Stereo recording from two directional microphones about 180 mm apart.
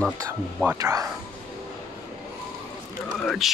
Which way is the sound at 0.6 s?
15° right (ahead or behind).